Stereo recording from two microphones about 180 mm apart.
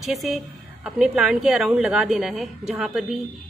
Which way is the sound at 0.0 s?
Centre (ahead or behind).